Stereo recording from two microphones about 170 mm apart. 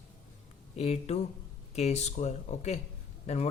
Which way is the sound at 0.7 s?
40° left (ahead or behind).